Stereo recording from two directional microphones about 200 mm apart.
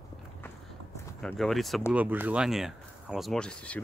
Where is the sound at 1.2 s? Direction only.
Centre (ahead or behind).